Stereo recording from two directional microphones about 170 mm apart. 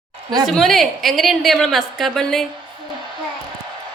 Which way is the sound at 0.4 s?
Centre (ahead or behind).